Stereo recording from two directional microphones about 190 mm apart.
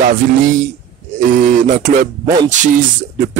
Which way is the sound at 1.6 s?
45° right (ahead or behind).